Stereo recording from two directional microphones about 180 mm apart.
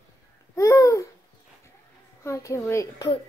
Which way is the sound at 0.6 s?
15° left (ahead or behind).